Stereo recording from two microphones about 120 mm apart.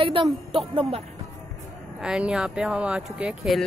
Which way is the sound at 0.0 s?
50° right (ahead or behind).